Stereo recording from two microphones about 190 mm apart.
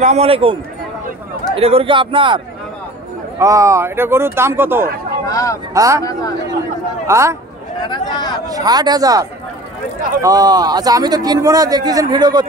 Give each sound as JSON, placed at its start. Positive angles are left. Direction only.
{"t": 0.0, "sound": "a man's voice", "side_deg": -35}
{"t": 5.3, "sound": "vehicle", "side_deg": 15}
{"t": 5.7, "sound": "speech", "side_deg": -15}
{"t": 7.1, "sound": "speech", "side_deg": -15}
{"t": 7.8, "sound": "speech", "side_deg": 25}
{"t": 8.5, "sound": "a man's voice", "side_deg": -20}